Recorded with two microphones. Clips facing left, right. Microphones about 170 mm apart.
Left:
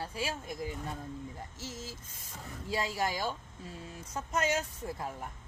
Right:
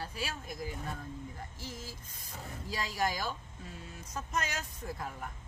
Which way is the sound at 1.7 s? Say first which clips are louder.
Left 2 dB; 25° left (ahead or behind).